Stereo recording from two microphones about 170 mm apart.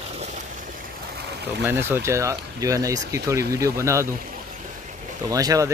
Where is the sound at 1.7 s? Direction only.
15° right (ahead or behind).